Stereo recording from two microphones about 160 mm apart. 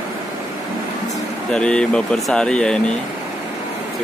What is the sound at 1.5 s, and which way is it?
Speech, 5° left (ahead or behind).